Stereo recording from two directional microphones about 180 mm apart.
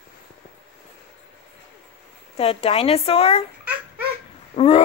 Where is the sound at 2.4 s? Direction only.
30° left (ahead or behind).